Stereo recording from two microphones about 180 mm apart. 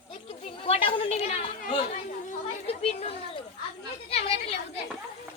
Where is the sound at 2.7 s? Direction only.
35° left (ahead or behind).